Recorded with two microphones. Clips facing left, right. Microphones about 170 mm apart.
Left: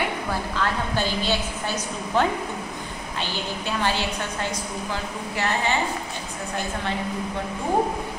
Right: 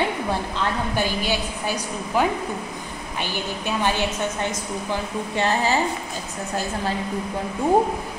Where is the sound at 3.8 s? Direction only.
20° right (ahead or behind).